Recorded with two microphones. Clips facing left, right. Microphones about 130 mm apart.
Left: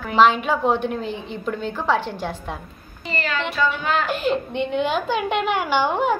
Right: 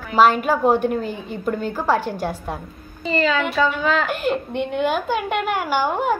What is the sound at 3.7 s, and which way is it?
Speech, 50° right (ahead or behind).